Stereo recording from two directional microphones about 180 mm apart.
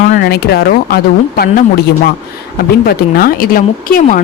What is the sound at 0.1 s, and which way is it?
A woman's voice, 60° left (ahead or behind).